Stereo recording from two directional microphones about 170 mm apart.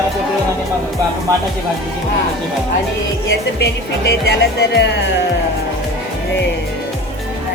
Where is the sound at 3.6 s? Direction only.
75° left (ahead or behind).